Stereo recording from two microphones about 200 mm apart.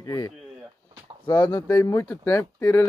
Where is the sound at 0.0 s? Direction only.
20° left (ahead or behind).